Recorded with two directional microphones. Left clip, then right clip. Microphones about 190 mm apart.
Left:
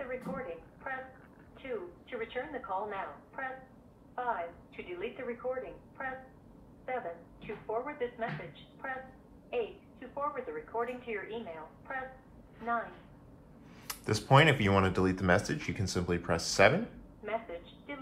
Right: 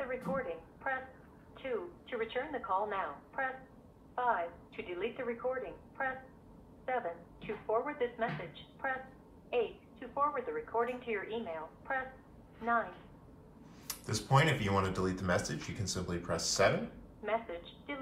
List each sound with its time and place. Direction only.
0.3 s a woman's voice: 30° right (ahead or behind)
9.5 s a woman's voice: 30° right (ahead or behind)
13.8 s speech: 15° right (ahead or behind)
17.2 s a woman's voice: 30° right (ahead or behind)